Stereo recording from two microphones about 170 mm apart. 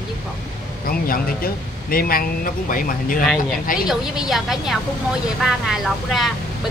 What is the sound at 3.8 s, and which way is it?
A woman's voice, centre (ahead or behind).